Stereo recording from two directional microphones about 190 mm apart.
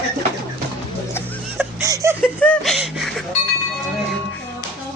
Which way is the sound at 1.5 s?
15° right (ahead or behind).